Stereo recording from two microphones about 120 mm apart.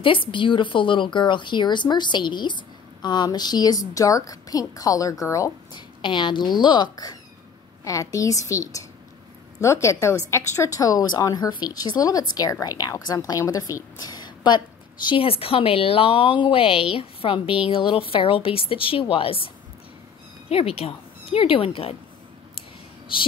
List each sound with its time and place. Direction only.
0.0 s a woman's voice: 45° left (ahead or behind)
15.0 s a woman's voice: 50° left (ahead or behind)
23.1 s a woman's voice: 45° left (ahead or behind)